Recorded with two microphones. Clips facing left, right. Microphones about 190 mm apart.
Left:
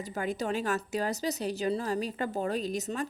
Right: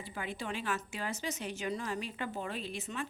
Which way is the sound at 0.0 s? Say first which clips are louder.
Left 8 dB; 40° left (ahead or behind).